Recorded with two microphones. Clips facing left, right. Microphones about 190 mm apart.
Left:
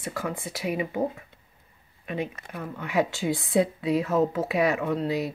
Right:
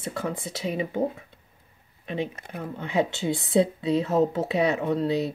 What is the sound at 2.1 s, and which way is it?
Speech, 25° right (ahead or behind).